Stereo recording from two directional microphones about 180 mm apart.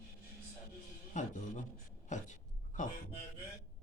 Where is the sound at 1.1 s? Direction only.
45° left (ahead or behind).